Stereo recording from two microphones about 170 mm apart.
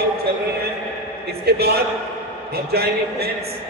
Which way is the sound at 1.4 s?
70° right (ahead or behind).